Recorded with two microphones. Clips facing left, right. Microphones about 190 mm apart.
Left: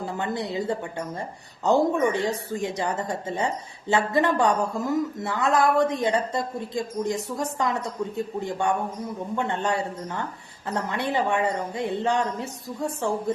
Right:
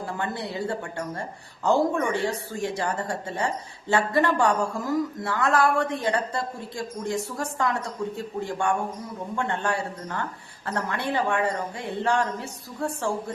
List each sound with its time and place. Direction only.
0.2 s speech: 20° left (ahead or behind)